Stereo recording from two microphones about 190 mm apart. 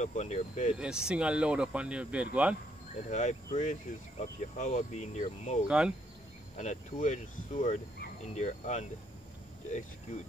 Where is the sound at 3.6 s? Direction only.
40° left (ahead or behind).